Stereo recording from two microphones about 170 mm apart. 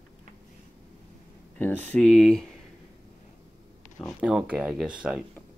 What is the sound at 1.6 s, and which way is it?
Speech, 10° left (ahead or behind).